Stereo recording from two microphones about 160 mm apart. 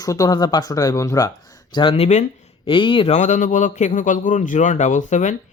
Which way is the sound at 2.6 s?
30° left (ahead or behind).